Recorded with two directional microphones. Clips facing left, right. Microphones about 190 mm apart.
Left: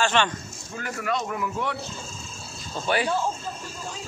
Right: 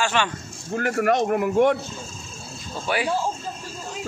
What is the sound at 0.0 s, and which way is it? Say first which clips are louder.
Speech: even; 10° right (ahead or behind).